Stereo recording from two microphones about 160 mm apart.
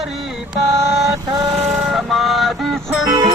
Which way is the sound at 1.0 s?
25° right (ahead or behind).